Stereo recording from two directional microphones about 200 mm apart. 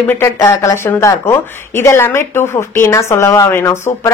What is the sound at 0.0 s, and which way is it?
Speech, 10° left (ahead or behind).